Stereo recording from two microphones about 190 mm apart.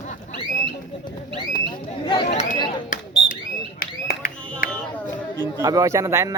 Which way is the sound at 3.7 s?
50° left (ahead or behind).